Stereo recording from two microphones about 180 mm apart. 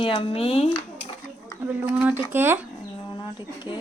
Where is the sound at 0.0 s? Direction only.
30° left (ahead or behind).